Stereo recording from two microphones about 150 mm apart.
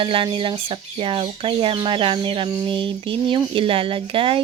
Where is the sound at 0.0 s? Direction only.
35° right (ahead or behind).